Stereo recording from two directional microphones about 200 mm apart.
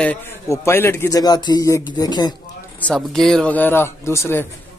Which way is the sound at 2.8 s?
5° left (ahead or behind).